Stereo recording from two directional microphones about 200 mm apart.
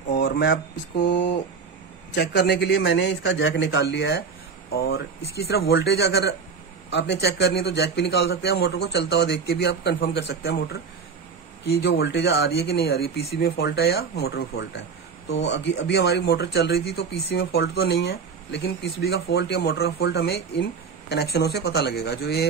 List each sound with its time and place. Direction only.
0.1 s speech: 55° left (ahead or behind)